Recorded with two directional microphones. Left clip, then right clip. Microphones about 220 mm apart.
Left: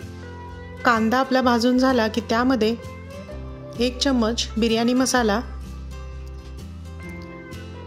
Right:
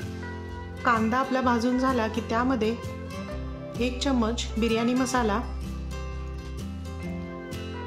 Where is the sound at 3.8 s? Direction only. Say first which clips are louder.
Left 5 dB; 25° left (ahead or behind).